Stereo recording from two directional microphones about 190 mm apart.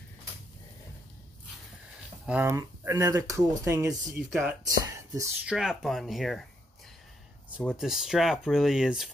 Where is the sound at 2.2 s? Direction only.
10° right (ahead or behind).